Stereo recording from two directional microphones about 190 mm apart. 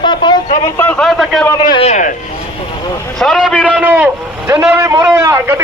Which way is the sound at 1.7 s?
35° left (ahead or behind).